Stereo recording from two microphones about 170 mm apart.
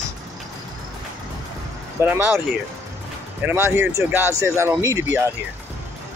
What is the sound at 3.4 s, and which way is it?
Speech, 10° right (ahead or behind).